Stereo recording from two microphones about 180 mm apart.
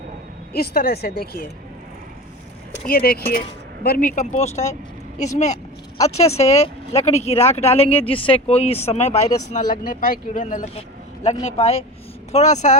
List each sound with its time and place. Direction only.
0.5 s speech: 60° left (ahead or behind)
2.8 s speech: 55° left (ahead or behind); by 4.6 s 40° left (ahead or behind)
6.1 s speech: 35° left (ahead or behind)